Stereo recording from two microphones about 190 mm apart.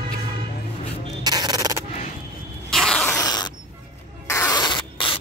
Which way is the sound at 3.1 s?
20° left (ahead or behind).